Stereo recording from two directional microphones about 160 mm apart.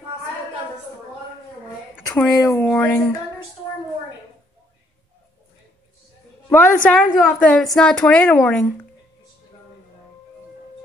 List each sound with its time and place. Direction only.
2.3 s speech: 20° left (ahead or behind)
6.5 s a woman's voice: 10° left (ahead or behind)